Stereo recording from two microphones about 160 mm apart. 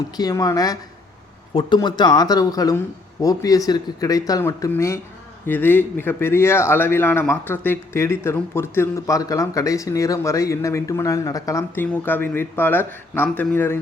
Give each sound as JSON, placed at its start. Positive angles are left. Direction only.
{"t": 0.2, "sound": "a man's voice", "side_deg": 25}